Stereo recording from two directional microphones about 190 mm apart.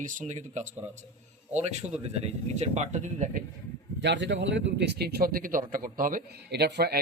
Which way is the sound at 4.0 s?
70° right (ahead or behind).